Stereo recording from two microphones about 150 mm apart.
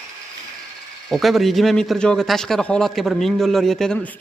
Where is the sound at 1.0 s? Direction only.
Centre (ahead or behind).